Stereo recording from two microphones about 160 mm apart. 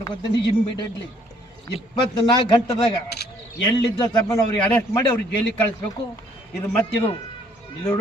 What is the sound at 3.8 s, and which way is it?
Speech, 25° left (ahead or behind).